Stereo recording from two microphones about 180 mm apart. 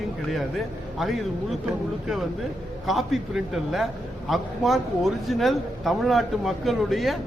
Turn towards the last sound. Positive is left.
turn(degrees=0)  # may be behind; listen again after turning